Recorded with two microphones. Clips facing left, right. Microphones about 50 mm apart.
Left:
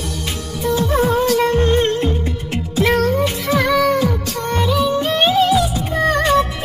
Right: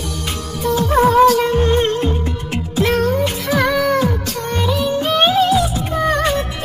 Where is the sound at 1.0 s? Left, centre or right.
Right.